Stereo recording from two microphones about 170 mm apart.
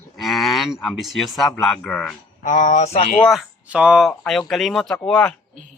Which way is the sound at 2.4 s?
50° left (ahead or behind).